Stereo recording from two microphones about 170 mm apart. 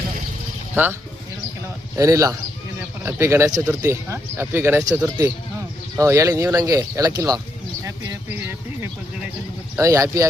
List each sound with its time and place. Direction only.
0.7 s speech: 10° right (ahead or behind)
2.0 s speech: 20° right (ahead or behind)
6.0 s speech: 15° right (ahead or behind)
9.7 s speech: 15° right (ahead or behind)